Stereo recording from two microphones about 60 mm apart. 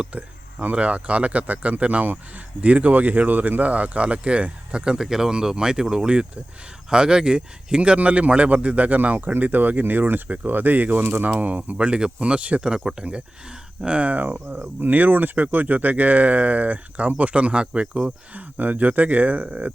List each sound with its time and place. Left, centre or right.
0.0 s speech: right